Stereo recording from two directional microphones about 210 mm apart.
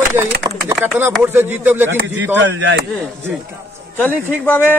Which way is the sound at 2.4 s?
60° right (ahead or behind).